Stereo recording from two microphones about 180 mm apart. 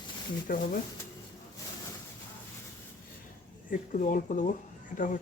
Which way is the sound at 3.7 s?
45° left (ahead or behind).